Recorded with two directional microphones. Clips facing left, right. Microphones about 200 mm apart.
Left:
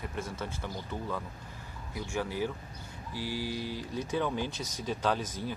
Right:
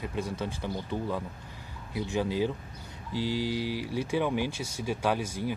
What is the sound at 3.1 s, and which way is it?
Mantra, 20° right (ahead or behind).